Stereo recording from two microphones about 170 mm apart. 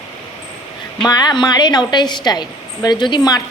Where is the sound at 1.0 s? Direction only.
25° left (ahead or behind).